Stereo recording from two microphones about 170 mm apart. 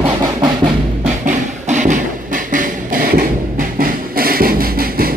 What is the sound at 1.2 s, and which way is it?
Music, 50° right (ahead or behind).